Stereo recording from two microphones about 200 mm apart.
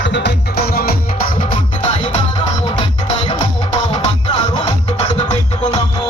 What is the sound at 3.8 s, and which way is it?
Music, 35° left (ahead or behind).